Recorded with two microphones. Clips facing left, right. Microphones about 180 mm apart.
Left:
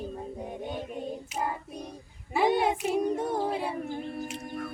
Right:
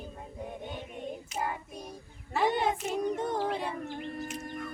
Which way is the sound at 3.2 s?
10° left (ahead or behind).